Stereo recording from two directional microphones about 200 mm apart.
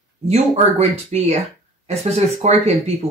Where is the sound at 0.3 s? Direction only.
30° right (ahead or behind).